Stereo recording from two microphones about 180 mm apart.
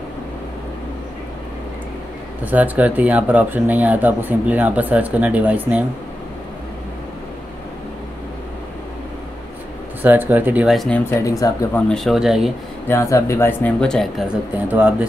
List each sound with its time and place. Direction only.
2.4 s speech: 10° right (ahead or behind)
10.0 s speech: 10° right (ahead or behind)
11.1 s speech: 20° left (ahead or behind)
11.9 s speech: centre (ahead or behind)
12.8 s speech: 15° left (ahead or behind); by 15.0 s 5° right (ahead or behind)